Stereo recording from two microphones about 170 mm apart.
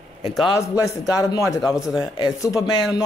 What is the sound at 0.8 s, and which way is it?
A man's voice, 20° left (ahead or behind).